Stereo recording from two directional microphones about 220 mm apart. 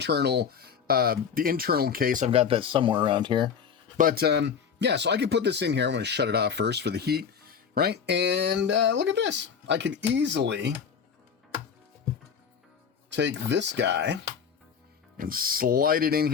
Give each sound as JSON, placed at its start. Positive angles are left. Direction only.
{"t": 0.0, "sound": "speech", "side_deg": -50}
{"t": 3.9, "sound": "speech", "side_deg": -40}
{"t": 13.1, "sound": "speech", "side_deg": -55}
{"t": 15.2, "sound": "speech", "side_deg": -40}